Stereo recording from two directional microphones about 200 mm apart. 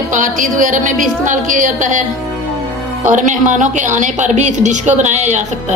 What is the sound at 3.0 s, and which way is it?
A woman's voice, 40° right (ahead or behind).